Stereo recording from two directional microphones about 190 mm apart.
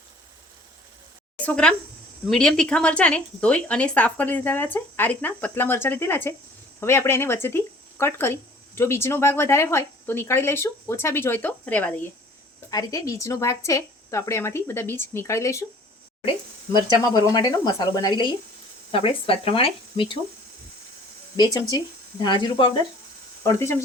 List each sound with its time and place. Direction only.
1.4 s a woman's voice: 5° left (ahead or behind)
12.7 s speech: 15° left (ahead or behind)
17.3 s speech: 20° left (ahead or behind)
21.3 s speech: 20° left (ahead or behind)
23.4 s speech: 15° left (ahead or behind)